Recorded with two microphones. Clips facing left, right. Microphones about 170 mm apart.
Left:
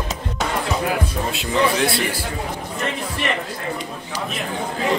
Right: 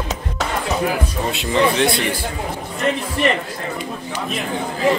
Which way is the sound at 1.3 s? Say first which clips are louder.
Right 3 dB; centre (ahead or behind).